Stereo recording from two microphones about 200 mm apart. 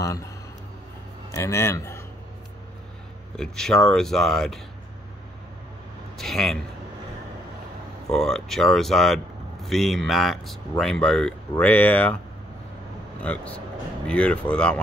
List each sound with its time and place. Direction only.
0.0 s a man's voice: 15° left (ahead or behind)
1.3 s speech: 15° left (ahead or behind)
3.3 s speech: centre (ahead or behind)
6.1 s a man's voice: centre (ahead or behind)
8.1 s speech: centre (ahead or behind)
13.2 s speech: 5° left (ahead or behind)